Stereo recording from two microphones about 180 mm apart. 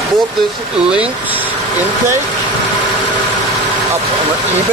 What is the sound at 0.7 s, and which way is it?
Speech, 5° right (ahead or behind).